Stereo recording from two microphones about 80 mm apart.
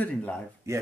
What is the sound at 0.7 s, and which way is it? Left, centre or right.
Speech, right.